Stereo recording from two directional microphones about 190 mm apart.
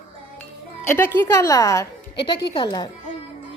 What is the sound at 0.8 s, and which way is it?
A woman's voice, 10° left (ahead or behind).